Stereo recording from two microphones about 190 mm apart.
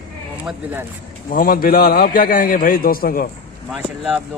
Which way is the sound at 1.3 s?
50° left (ahead or behind).